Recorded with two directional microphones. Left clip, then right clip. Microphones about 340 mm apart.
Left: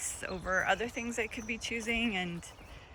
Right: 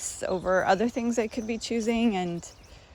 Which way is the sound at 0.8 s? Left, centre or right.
Right.